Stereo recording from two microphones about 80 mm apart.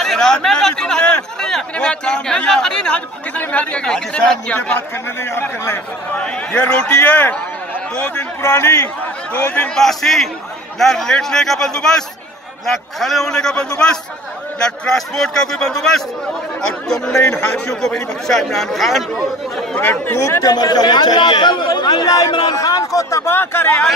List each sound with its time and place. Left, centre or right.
0.0 s a sound: centre
4.6 s speech: left
6.1 s a man's voice: centre
8.4 s speech: left
9.3 s a man's voice: centre
9.8 s a man's voice: centre
19.8 s speech: left
20.3 s speech: left